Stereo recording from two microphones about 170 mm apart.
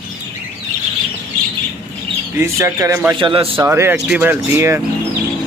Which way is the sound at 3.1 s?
30° right (ahead or behind).